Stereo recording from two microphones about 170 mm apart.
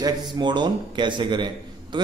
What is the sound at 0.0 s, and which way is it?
A man's voice, 25° right (ahead or behind).